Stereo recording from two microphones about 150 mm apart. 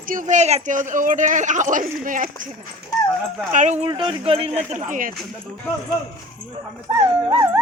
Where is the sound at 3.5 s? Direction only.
55° right (ahead or behind).